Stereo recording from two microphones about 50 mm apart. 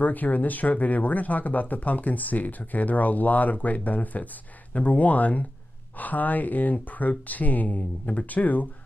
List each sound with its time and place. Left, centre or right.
0.0 s speech: left